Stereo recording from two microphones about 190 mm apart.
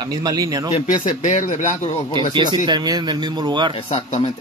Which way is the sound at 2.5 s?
20° right (ahead or behind).